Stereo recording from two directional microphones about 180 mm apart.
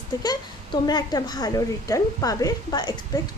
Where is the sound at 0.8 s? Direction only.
20° left (ahead or behind).